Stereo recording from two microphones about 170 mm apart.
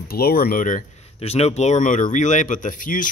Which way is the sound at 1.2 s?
40° left (ahead or behind).